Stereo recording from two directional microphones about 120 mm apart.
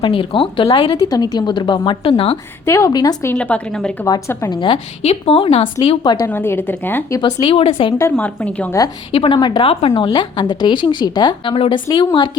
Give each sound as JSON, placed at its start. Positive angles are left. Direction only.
{"t": 0.0, "sound": "a woman's voice", "side_deg": 45}
{"t": 0.9, "sound": "a woman's voice", "side_deg": 30}
{"t": 2.6, "sound": "a woman's voice", "side_deg": 25}
{"t": 3.3, "sound": "speech", "side_deg": 10}
{"t": 4.0, "sound": "a woman's voice", "side_deg": 25}
{"t": 4.6, "sound": "a woman's voice", "side_deg": 50}
{"t": 6.2, "sound": "speech", "side_deg": 20}
{"t": 7.2, "sound": "a woman's voice", "side_deg": 40}
{"t": 7.5, "sound": "a woman's voice", "side_deg": 50}
{"t": 8.1, "sound": "speech", "side_deg": 10}
{"t": 9.1, "sound": "a woman's voice", "side_deg": 45}